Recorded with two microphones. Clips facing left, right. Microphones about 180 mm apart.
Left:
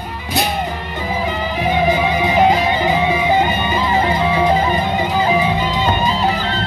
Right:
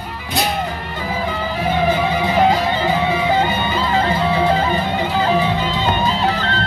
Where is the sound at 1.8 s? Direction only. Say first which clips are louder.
Left 1 dB; 15° left (ahead or behind).